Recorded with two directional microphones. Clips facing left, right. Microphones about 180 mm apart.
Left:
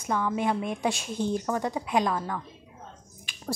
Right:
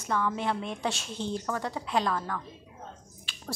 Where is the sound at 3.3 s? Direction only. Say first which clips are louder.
Left 1 dB; 15° left (ahead or behind).